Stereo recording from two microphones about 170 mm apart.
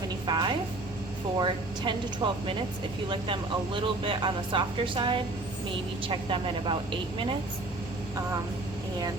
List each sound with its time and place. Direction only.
0.3 s a woman's voice: 25° right (ahead or behind)